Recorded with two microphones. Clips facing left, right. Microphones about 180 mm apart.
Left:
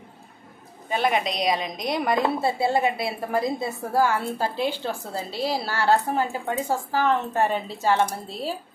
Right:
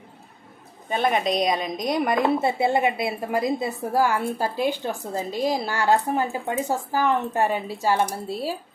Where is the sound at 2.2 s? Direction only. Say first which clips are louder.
Right 2 dB; 20° right (ahead or behind).